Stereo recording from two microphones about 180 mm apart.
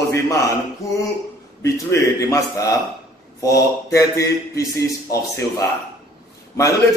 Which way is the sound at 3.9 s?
15° left (ahead or behind).